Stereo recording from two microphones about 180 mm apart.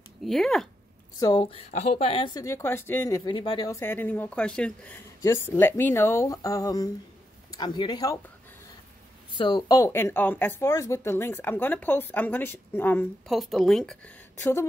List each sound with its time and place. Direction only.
0.2 s a woman's voice: centre (ahead or behind)
1.3 s speech: 30° left (ahead or behind)
9.4 s speech: 20° left (ahead or behind)
13.3 s a woman's voice: centre (ahead or behind)